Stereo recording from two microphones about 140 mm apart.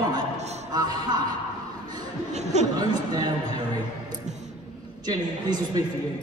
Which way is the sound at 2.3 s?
55° right (ahead or behind).